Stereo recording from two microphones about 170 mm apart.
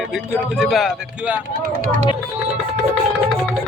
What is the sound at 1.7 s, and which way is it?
Speech, 50° right (ahead or behind).